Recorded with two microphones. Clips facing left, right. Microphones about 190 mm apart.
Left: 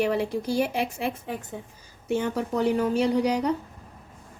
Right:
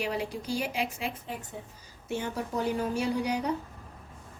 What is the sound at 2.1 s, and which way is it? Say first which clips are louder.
A woman's voice: left 6 dB; 65° left (ahead or behind).